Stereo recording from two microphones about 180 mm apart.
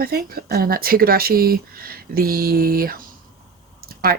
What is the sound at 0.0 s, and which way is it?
Speech, 55° right (ahead or behind).